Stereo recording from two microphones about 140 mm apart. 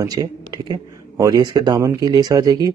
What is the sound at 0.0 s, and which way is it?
Speech, 25° right (ahead or behind).